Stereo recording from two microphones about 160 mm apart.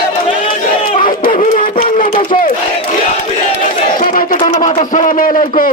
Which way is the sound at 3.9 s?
60° left (ahead or behind).